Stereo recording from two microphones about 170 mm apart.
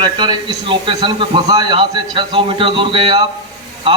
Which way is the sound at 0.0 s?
25° right (ahead or behind).